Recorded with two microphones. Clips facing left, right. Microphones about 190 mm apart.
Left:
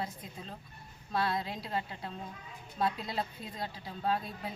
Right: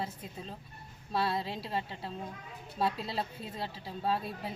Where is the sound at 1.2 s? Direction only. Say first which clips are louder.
Right 1 dB; 30° right (ahead or behind).